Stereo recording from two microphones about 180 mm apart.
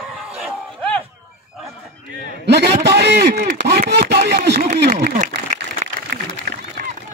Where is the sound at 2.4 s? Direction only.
70° right (ahead or behind).